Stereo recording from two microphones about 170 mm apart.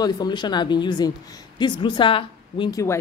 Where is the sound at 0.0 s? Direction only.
25° left (ahead or behind).